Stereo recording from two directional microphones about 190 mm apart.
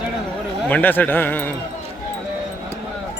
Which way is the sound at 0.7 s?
10° left (ahead or behind).